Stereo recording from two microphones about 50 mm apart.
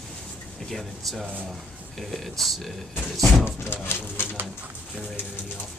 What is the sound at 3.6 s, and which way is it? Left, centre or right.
Speech, left.